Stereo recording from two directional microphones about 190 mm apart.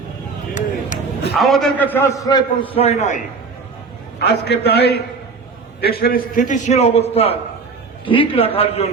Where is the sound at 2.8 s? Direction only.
35° left (ahead or behind).